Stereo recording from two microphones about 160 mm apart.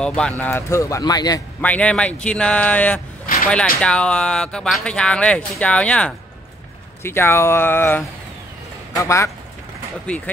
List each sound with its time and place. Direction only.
0.0 s speech: 5° left (ahead or behind); by 1.4 s 25° left (ahead or behind)
1.6 s a man's voice: 10° left (ahead or behind)
10.0 s speech: 10° left (ahead or behind)